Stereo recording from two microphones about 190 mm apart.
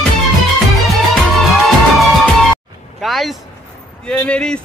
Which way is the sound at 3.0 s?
Centre (ahead or behind).